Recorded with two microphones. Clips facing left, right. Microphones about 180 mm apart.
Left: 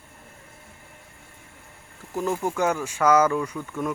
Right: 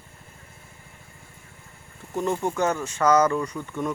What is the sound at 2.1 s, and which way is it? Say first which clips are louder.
Speech: even; 5° left (ahead or behind).